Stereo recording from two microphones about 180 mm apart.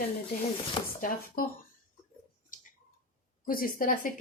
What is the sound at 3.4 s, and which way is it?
Speech, 55° left (ahead or behind).